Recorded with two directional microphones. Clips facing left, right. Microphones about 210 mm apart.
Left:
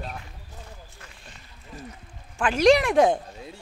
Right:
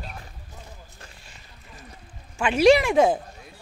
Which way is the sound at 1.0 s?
35° right (ahead or behind).